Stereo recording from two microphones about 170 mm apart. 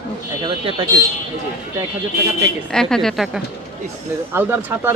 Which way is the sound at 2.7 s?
5° left (ahead or behind).